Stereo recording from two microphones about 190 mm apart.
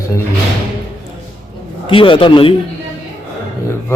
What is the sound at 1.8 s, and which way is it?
Speech, 25° left (ahead or behind).